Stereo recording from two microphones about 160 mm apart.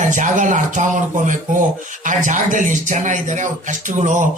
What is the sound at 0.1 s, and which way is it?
A man's voice, 50° right (ahead or behind).